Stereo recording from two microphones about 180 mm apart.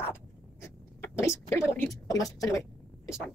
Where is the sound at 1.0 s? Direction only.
15° left (ahead or behind).